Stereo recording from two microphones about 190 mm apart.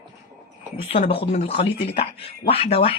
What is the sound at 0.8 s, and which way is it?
Speech, 30° left (ahead or behind).